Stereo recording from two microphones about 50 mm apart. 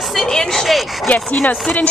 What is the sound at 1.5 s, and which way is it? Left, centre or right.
Speech, left.